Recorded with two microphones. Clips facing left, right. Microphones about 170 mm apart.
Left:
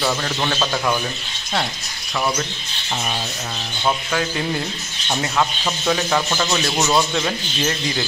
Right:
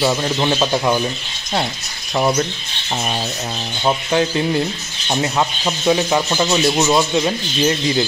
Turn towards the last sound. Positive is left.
turn(degrees=-15)  # may be behind; listen again after turning